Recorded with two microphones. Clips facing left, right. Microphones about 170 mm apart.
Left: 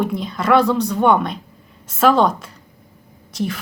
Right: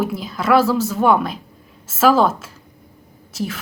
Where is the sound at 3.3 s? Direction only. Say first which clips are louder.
Left 2 dB; centre (ahead or behind).